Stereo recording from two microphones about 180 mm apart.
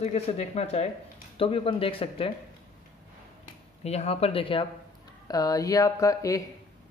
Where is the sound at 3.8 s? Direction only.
35° left (ahead or behind); by 6.4 s 20° left (ahead or behind).